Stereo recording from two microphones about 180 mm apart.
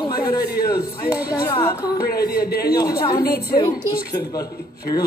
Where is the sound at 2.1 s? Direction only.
55° left (ahead or behind).